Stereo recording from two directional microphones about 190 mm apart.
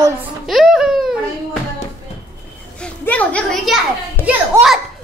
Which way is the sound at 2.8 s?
5° left (ahead or behind).